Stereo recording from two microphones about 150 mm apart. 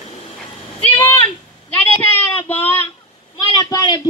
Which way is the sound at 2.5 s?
15° left (ahead or behind).